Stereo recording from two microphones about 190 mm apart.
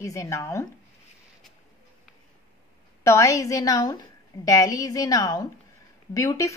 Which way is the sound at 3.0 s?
15° left (ahead or behind).